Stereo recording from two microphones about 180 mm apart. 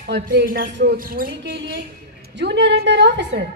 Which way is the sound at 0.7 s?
80° right.